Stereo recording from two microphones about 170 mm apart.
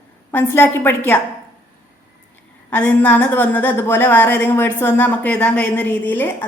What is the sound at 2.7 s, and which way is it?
A woman's voice, 10° left (ahead or behind).